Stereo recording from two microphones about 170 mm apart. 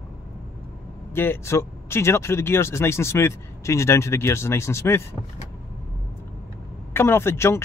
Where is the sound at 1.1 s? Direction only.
15° left (ahead or behind).